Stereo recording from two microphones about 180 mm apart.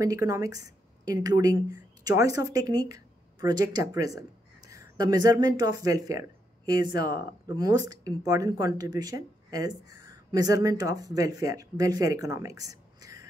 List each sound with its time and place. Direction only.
0.0 s speech: 20° right (ahead or behind)